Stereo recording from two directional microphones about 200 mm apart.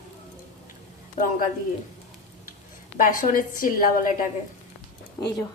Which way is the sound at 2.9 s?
40° left (ahead or behind).